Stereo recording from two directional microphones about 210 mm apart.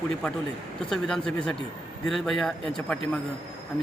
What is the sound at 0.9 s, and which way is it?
Speech, 5° left (ahead or behind).